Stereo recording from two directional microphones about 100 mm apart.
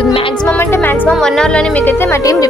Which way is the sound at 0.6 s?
25° left (ahead or behind).